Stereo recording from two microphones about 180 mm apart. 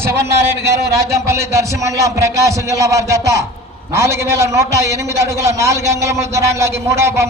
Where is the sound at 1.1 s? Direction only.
15° right (ahead or behind).